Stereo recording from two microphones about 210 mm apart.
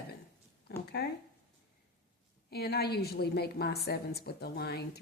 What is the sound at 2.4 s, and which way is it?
A woman's voice, 50° left (ahead or behind).